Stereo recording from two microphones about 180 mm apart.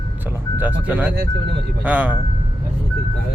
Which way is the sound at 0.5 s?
10° right (ahead or behind).